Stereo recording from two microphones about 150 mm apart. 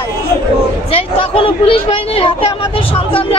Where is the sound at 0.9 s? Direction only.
40° left (ahead or behind).